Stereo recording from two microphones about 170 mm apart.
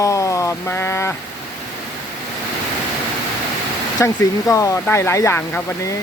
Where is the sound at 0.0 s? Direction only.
20° left (ahead or behind).